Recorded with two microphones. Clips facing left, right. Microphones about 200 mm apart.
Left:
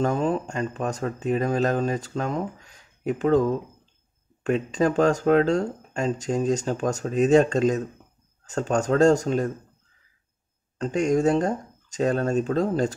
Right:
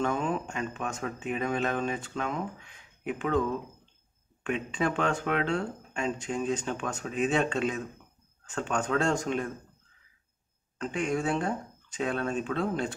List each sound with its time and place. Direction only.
0.0 s speech: 35° left (ahead or behind)
10.8 s speech: 40° left (ahead or behind)